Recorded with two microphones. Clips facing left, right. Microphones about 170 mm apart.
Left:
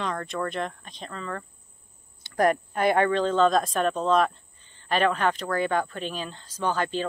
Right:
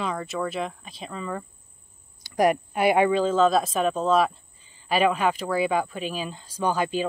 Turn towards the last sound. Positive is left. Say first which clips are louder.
# right 2 dB
turn(degrees=-10)  # may be behind; listen again after turning